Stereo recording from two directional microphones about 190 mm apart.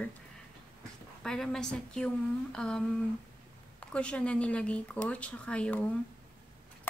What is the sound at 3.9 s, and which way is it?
Speech, 5° left (ahead or behind).